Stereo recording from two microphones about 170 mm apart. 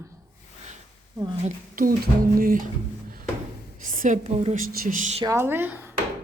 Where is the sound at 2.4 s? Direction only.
55° right (ahead or behind).